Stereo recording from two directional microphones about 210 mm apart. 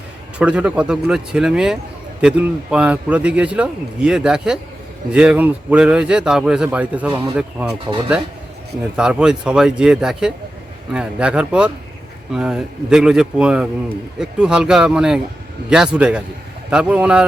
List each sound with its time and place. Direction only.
0.3 s a man's voice: 5° right (ahead or behind)